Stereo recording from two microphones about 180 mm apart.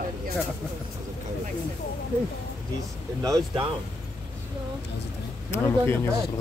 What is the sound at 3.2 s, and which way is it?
Speech, 20° right (ahead or behind).